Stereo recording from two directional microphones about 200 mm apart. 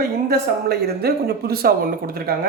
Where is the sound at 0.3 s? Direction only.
50° right (ahead or behind).